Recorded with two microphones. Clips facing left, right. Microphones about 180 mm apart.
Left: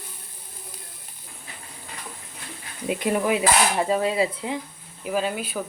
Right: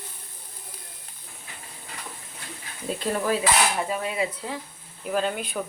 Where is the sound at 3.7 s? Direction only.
30° left (ahead or behind).